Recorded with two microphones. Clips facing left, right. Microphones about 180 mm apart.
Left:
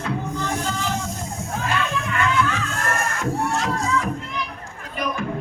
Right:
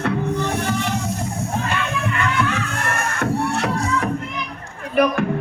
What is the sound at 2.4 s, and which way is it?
Music, 65° right (ahead or behind).